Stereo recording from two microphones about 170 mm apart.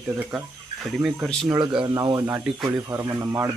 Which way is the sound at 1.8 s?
25° right (ahead or behind).